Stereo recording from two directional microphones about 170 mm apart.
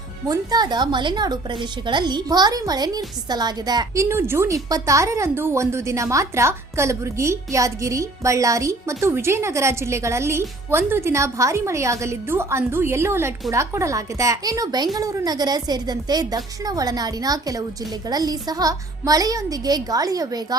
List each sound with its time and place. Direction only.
0.3 s a woman's voice: 25° right (ahead or behind)